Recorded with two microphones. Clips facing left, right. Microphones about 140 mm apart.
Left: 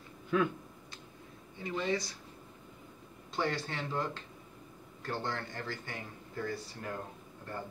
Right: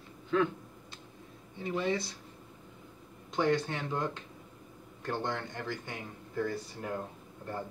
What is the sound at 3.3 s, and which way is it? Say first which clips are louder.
Speech: right 5 dB; 20° right (ahead or behind).